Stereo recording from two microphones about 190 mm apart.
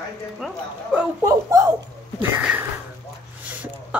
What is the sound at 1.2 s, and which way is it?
Speech, 20° right (ahead or behind).